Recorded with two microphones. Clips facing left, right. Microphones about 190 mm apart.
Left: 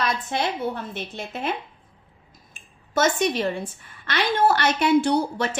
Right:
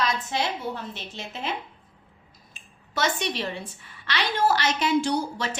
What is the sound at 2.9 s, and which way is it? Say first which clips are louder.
A woman's voice: left 6 dB; 45° left (ahead or behind).